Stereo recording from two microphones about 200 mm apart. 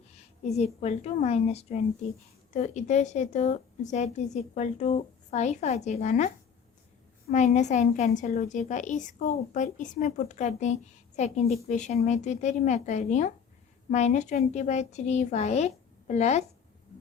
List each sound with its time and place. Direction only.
0.1 s a woman's voice: 35° left (ahead or behind)
7.3 s a woman's voice: 35° left (ahead or behind)